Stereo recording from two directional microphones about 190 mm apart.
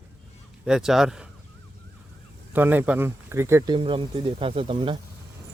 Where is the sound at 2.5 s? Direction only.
10° right (ahead or behind).